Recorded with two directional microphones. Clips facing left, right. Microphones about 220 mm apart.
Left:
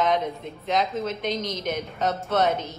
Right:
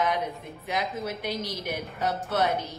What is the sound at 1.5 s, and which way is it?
Speech, 15° right (ahead or behind).